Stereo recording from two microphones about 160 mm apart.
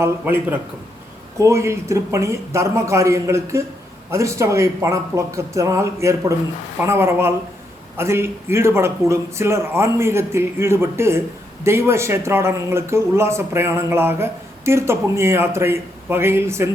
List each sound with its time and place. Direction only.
0.0 s speech: 15° right (ahead or behind)